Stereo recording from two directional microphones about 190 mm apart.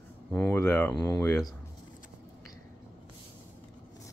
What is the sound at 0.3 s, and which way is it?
Speech, 10° left (ahead or behind).